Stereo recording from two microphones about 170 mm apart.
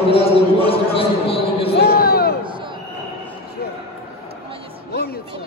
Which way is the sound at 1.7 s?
65° left (ahead or behind).